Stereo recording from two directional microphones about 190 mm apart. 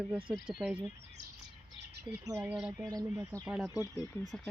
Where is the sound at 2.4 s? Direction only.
5° right (ahead or behind).